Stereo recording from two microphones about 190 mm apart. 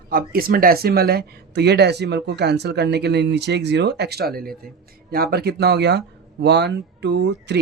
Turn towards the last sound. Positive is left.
turn(degrees=-65)  # may be behind; listen again after turning